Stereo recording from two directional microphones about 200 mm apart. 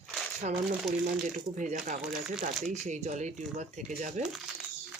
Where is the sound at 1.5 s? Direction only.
40° right (ahead or behind).